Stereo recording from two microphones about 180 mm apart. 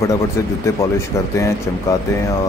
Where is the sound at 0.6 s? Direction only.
15° left (ahead or behind).